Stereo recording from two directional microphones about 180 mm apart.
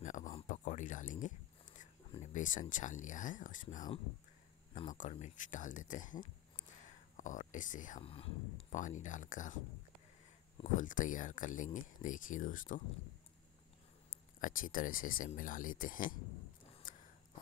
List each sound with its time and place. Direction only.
0.0 s a sound: 45° left (ahead or behind)
2.7 s speech: 45° left (ahead or behind)
5.1 s speech: 45° left (ahead or behind)
8.0 s speech: 30° left (ahead or behind)
8.7 s speech: 45° left (ahead or behind)
10.6 s speech: 45° left (ahead or behind)
14.4 s speech: 50° left (ahead or behind)
16.8 s a sound: 45° left (ahead or behind)